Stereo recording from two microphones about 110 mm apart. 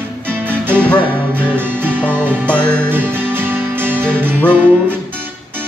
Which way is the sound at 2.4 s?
10° left (ahead or behind).